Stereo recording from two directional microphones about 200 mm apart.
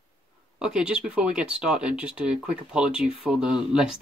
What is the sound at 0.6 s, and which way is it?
Speech, 5° right (ahead or behind).